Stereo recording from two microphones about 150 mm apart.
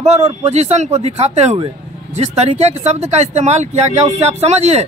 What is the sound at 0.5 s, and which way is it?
Speech, 50° right (ahead or behind).